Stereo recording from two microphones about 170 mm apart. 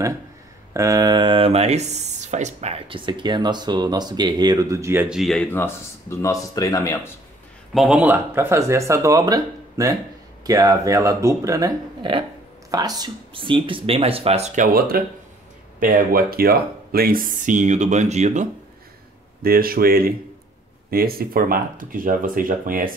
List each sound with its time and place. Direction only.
0.7 s speech: 20° right (ahead or behind); by 7.0 s 20° left (ahead or behind)
7.7 s speech: 5° right (ahead or behind); by 18.5 s 45° right (ahead or behind)
19.4 s speech: 60° right (ahead or behind)